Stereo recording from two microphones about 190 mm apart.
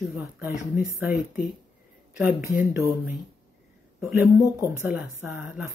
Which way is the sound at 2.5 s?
10° right (ahead or behind).